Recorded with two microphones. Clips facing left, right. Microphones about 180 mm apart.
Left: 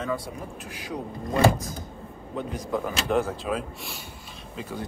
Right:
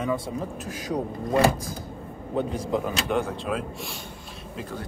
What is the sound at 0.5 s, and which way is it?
Speech, 40° right (ahead or behind).